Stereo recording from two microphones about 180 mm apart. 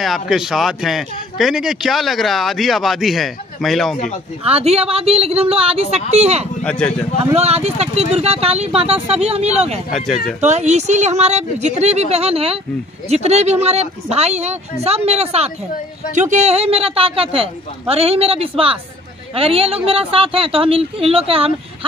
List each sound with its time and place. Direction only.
0.0 s a man's voice: centre (ahead or behind)
4.5 s a woman's voice: 35° right (ahead or behind)
6.6 s speech: 5° left (ahead or behind)
7.3 s a woman's voice: 35° right (ahead or behind)
9.9 s a man's voice: centre (ahead or behind)
10.4 s a woman's voice: 40° right (ahead or behind)